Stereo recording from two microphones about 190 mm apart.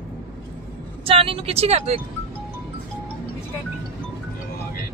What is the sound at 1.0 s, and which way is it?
Speech, 30° right (ahead or behind).